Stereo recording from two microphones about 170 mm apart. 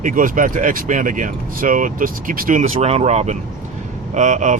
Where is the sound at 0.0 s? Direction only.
50° right (ahead or behind).